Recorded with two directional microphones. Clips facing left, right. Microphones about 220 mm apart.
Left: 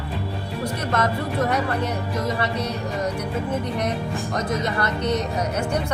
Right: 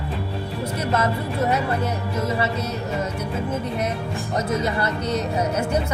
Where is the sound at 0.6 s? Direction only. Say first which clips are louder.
Right 1 dB; 10° right (ahead or behind).